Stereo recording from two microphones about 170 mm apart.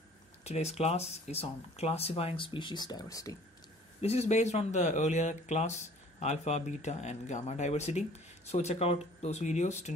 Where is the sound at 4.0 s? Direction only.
40° left (ahead or behind).